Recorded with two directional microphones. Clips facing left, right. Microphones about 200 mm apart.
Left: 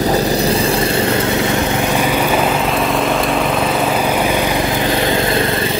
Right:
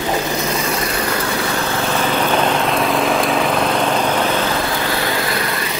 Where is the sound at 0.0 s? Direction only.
35° left (ahead or behind).